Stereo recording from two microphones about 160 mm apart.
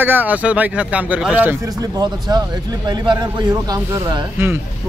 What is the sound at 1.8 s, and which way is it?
Speech, 25° right (ahead or behind).